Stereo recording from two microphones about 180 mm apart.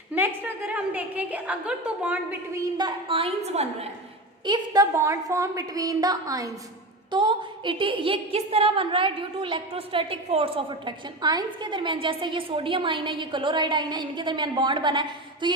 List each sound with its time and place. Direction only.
0.1 s a woman's voice: 10° right (ahead or behind)
2.7 s a woman's voice: 30° right (ahead or behind)
4.4 s a woman's voice: 25° right (ahead or behind)